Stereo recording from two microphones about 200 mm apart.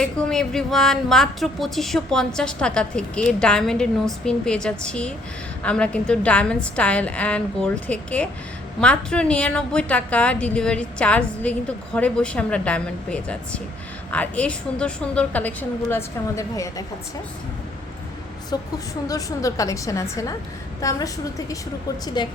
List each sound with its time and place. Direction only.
0.0 s a woman's voice: 5° left (ahead or behind)
18.5 s a woman's voice: 20° left (ahead or behind)